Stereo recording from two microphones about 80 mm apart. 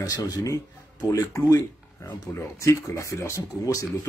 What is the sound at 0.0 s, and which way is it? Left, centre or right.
Speech, left.